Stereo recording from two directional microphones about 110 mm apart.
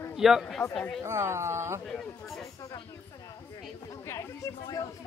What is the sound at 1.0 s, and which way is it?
Speech, 25° right (ahead or behind).